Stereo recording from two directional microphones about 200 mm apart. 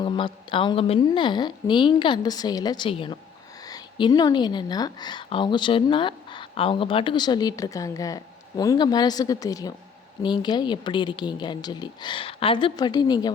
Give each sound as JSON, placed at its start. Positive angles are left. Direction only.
{"t": 0.0, "sound": "a woman's voice", "side_deg": 25}